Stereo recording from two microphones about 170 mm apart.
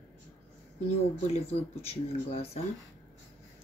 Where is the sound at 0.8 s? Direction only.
40° left (ahead or behind).